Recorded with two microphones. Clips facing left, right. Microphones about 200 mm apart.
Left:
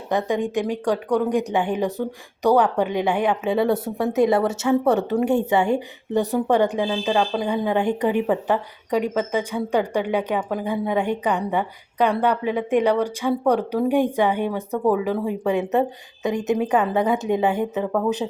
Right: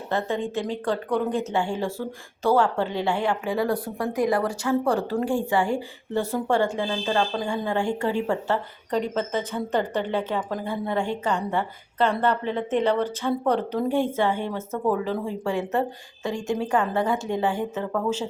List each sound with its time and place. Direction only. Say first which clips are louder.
0.1 s a woman's voice: left 4 dB; 15° left (ahead or behind)